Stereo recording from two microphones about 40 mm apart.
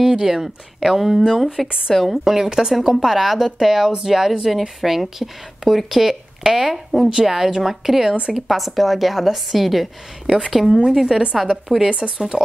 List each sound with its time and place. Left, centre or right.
0.1 s speech: centre
7.1 s a woman's voice: centre
7.3 s speech: centre
10.2 s speech: centre